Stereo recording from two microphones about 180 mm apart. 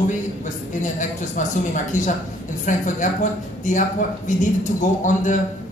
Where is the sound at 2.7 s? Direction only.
45° left (ahead or behind).